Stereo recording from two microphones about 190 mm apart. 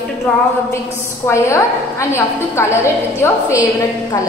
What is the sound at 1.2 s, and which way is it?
A woman's voice, 15° left (ahead or behind).